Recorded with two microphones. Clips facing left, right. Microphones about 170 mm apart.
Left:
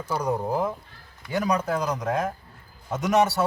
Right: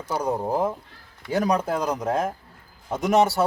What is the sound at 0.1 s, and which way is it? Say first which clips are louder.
Speech: right 1 dB; 25° right (ahead or behind).